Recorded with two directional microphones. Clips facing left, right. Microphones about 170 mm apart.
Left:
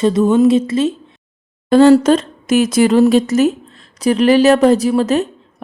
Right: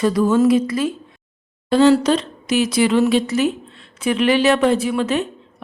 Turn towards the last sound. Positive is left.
turn(degrees=40)  # may be behind; listen again after turning